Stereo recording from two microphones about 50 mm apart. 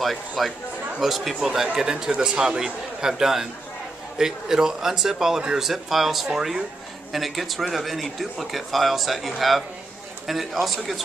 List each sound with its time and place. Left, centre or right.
0.0 s a man's voice: centre